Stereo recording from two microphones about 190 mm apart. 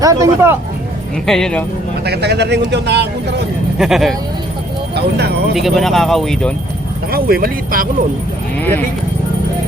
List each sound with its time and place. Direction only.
0.0 s speech: 15° right (ahead or behind)
1.3 s speech: 5° left (ahead or behind)
2.0 s speech: 60° right (ahead or behind)
3.8 s speech: centre (ahead or behind)
4.9 s speech: 60° right (ahead or behind)
5.5 s speech: centre (ahead or behind)
7.1 s speech: 55° right (ahead or behind)